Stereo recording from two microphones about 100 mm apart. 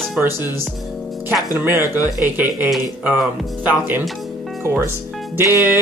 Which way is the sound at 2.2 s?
20° right (ahead or behind).